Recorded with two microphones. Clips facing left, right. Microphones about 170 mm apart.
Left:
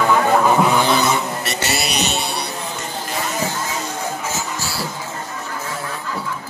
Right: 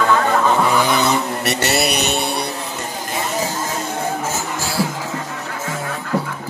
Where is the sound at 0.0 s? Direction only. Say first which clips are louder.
Left 1 dB; 15° left (ahead or behind).